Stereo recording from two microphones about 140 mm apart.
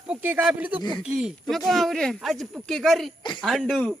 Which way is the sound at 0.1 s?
10° right (ahead or behind).